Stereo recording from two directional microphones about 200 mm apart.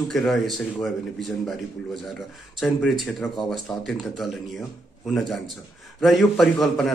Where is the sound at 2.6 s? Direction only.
Centre (ahead or behind).